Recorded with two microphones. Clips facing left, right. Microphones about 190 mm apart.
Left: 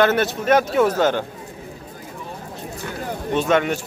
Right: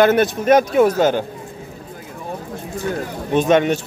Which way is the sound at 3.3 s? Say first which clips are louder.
Right 4 dB; 20° right (ahead or behind).